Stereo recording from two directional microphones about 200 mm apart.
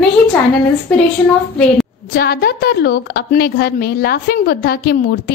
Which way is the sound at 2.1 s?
50° left (ahead or behind).